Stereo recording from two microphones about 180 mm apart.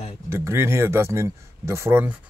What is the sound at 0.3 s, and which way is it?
Speech, 15° right (ahead or behind).